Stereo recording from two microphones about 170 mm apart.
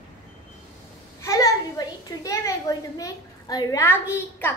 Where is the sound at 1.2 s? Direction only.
20° left (ahead or behind).